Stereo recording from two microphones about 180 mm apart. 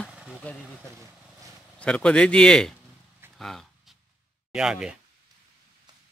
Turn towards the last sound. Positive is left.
turn(degrees=-5)  # may be behind; listen again after turning